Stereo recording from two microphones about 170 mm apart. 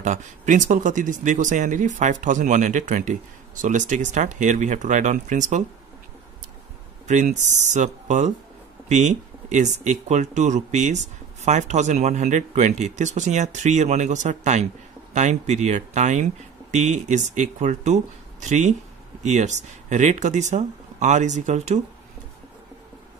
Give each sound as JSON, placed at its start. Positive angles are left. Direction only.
{"t": 0.0, "sound": "speech", "side_deg": -45}
{"t": 7.1, "sound": "speech", "side_deg": -45}